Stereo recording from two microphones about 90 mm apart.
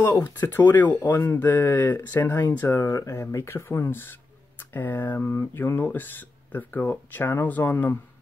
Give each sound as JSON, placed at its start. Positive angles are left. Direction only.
{"t": 0.0, "sound": "speech", "side_deg": 30}
{"t": 2.8, "sound": "speech", "side_deg": 35}